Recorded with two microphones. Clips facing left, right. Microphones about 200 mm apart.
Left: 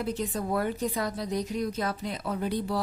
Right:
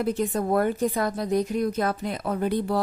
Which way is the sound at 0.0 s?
55° right (ahead or behind).